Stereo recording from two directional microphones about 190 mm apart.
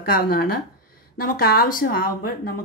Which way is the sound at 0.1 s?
55° left (ahead or behind).